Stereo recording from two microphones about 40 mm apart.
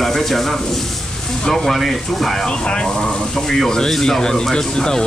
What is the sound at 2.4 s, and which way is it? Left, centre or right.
Speech, left.